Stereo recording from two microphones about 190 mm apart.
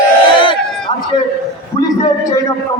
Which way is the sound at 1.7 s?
20° left (ahead or behind).